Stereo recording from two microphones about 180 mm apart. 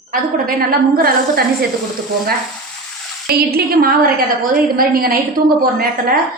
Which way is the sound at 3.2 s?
55° right (ahead or behind).